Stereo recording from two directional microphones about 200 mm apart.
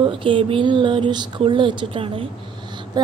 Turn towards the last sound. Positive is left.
turn(degrees=-20)  # may be behind; listen again after turning